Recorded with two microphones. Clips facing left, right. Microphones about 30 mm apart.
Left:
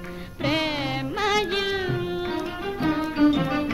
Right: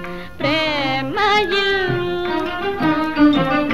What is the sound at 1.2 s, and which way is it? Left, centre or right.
Music, right.